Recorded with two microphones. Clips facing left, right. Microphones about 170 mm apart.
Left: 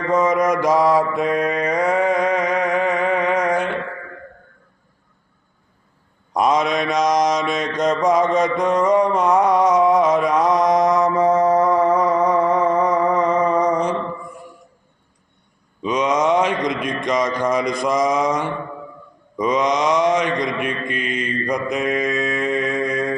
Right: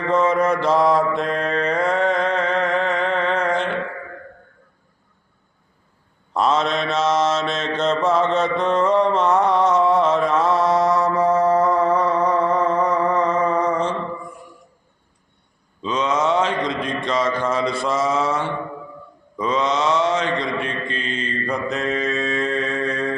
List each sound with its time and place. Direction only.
0.1 s mantra: 10° left (ahead or behind)
6.3 s mantra: 15° left (ahead or behind)
15.8 s a sound: 15° left (ahead or behind)
19.4 s mantra: 15° left (ahead or behind)